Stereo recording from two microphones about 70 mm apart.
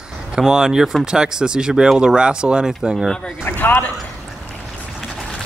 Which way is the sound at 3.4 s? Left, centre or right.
Left.